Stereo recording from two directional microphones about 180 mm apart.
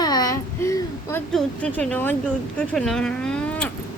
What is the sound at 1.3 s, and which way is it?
A woman's voice, 5° left (ahead or behind).